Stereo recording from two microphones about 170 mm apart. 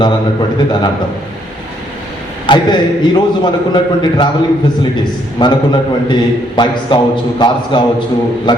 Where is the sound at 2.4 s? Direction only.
25° left (ahead or behind).